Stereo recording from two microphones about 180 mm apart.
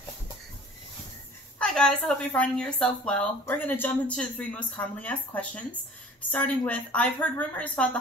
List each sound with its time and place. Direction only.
1.6 s a woman's voice: 5° left (ahead or behind)